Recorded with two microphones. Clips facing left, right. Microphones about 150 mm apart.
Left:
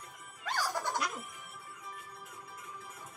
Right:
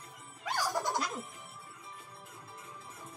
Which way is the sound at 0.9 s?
30° right (ahead or behind).